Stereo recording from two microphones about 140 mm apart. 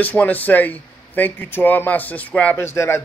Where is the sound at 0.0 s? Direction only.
10° left (ahead or behind).